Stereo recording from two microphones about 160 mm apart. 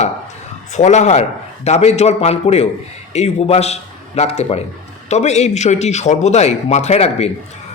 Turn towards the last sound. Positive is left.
turn(degrees=40)  # may be behind; listen again after turning